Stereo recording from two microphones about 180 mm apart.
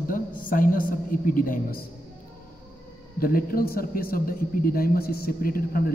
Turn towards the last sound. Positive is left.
turn(degrees=55)  # may be behind; listen again after turning